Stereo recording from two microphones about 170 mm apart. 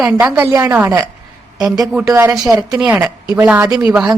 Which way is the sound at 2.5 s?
20° right (ahead or behind).